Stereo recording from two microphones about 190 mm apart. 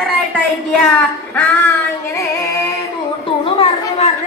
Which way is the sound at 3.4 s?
30° left (ahead or behind).